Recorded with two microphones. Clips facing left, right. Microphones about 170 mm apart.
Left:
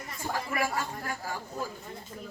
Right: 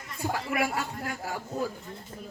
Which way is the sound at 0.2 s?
70° right (ahead or behind).